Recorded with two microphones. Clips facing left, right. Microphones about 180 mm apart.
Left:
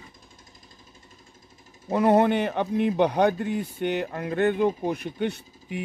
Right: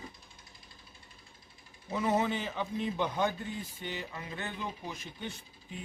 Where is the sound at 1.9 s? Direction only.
60° left (ahead or behind).